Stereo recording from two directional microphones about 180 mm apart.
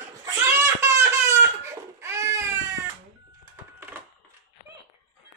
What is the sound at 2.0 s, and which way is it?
Baby cry, 15° right (ahead or behind).